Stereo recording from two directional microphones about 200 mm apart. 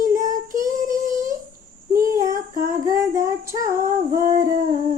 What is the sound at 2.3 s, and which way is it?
Humming, 40° right (ahead or behind).